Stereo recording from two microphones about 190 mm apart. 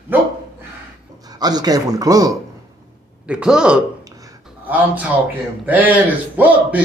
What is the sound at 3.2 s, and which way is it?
A man's voice, 5° right (ahead or behind).